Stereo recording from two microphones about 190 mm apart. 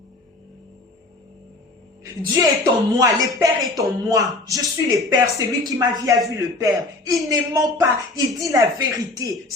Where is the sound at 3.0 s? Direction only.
15° right (ahead or behind).